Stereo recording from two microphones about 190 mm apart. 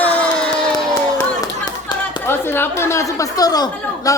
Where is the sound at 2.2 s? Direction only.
10° left (ahead or behind).